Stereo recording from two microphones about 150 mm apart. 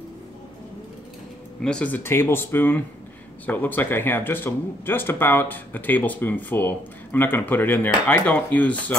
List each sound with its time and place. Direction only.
1.6 s speech: 5° left (ahead or behind)